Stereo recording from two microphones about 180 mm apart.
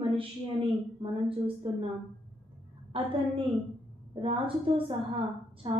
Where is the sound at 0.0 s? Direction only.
30° right (ahead or behind).